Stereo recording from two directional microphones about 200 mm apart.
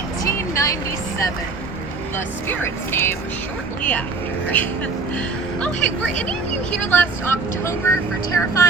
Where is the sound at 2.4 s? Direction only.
10° left (ahead or behind).